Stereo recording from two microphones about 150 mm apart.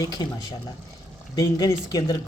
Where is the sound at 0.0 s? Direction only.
25° left (ahead or behind).